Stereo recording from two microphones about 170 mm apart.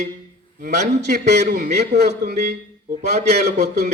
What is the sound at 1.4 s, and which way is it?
Speech, 60° right (ahead or behind).